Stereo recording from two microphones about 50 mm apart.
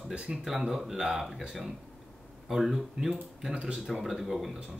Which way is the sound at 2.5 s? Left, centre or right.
Centre.